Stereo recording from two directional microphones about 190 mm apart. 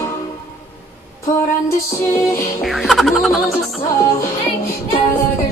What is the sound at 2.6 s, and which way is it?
Music, centre (ahead or behind).